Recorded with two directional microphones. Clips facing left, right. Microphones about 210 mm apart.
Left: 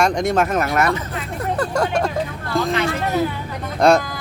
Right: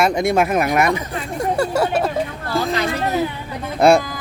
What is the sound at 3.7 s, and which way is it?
Speech, 10° right (ahead or behind).